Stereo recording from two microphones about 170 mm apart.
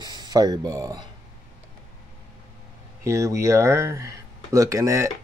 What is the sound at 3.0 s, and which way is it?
Speech, 15° right (ahead or behind).